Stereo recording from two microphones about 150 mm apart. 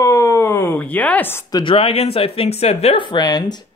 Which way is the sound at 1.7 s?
40° left (ahead or behind).